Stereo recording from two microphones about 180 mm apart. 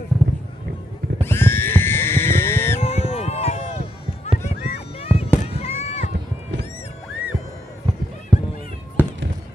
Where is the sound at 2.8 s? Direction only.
35° left (ahead or behind).